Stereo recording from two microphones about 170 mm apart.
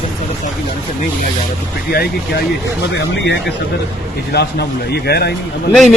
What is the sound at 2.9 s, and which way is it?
Speech, 90° left.